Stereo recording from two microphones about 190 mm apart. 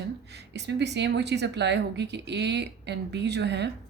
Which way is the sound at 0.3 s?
65° right (ahead or behind).